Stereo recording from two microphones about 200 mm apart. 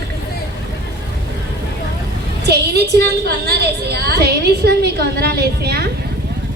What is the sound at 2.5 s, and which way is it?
A woman's voice, 55° right (ahead or behind).